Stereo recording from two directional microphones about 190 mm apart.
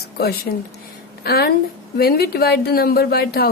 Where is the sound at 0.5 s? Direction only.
50° left (ahead or behind).